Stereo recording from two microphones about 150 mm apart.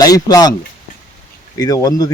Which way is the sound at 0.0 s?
25° left (ahead or behind).